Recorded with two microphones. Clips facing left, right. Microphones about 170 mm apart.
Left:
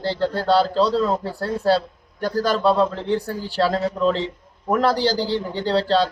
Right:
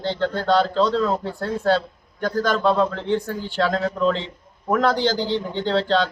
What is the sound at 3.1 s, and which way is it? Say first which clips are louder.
Speech: even; 35° left (ahead or behind).